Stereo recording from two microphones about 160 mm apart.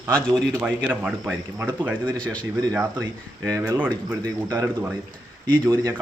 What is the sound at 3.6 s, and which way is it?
Speech, 15° right (ahead or behind).